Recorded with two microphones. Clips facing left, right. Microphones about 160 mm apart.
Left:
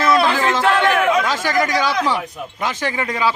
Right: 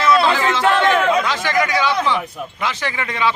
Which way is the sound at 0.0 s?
45° left (ahead or behind).